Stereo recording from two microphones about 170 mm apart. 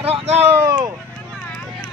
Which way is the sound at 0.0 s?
35° right (ahead or behind).